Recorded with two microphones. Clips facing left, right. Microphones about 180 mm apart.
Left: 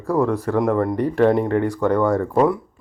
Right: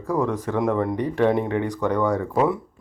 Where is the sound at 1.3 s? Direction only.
50° left (ahead or behind).